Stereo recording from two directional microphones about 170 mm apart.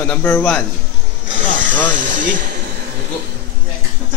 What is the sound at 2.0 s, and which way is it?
Speech, 50° right (ahead or behind).